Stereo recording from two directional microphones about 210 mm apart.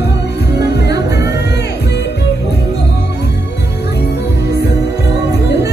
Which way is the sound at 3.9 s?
50° left (ahead or behind).